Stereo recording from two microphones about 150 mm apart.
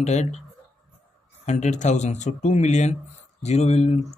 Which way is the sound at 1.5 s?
50° left (ahead or behind).